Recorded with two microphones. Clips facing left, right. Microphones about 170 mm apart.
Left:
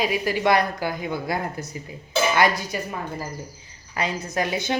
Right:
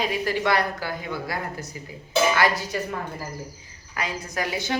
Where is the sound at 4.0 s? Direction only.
25° left (ahead or behind).